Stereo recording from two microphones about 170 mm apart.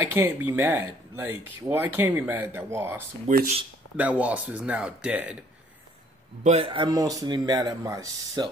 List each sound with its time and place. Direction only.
0.0 s speech: 15° right (ahead or behind)
3.3 s speech: 50° right (ahead or behind)
3.9 s speech: 10° right (ahead or behind)
6.4 s speech: 35° right (ahead or behind); by 8.5 s 20° right (ahead or behind)